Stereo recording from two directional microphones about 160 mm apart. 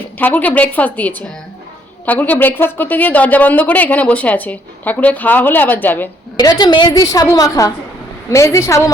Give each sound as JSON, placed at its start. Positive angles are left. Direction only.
{"t": 0.2, "sound": "speech", "side_deg": 10}
{"t": 6.3, "sound": "a woman's voice", "side_deg": 25}